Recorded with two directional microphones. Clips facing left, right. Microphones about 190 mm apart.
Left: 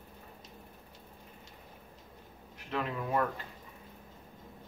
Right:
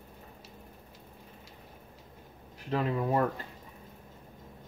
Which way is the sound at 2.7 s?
35° right (ahead or behind).